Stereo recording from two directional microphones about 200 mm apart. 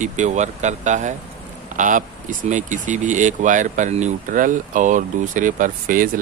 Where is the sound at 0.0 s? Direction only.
35° right (ahead or behind).